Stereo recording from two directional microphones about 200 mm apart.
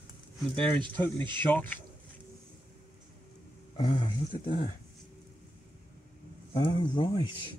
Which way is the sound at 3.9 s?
25° left (ahead or behind).